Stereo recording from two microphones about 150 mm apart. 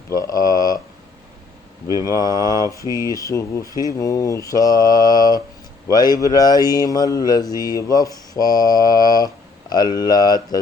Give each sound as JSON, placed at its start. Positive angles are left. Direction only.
{"t": 0.1, "sound": "mantra", "side_deg": 25}
{"t": 1.9, "sound": "mantra", "side_deg": 25}